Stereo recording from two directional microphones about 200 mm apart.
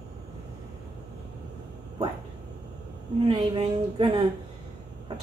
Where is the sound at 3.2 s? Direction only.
30° right (ahead or behind).